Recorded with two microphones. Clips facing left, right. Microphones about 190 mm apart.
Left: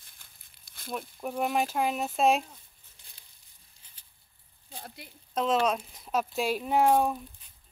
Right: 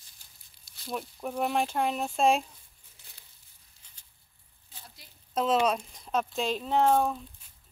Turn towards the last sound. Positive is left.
turn(degrees=10)  # may be behind; listen again after turning